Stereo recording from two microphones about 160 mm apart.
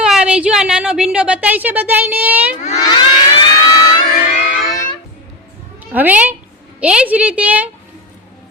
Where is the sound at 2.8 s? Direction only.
30° left (ahead or behind).